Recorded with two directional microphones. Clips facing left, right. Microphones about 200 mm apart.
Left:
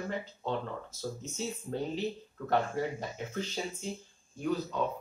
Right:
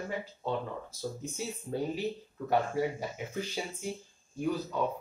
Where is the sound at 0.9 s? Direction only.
10° right (ahead or behind).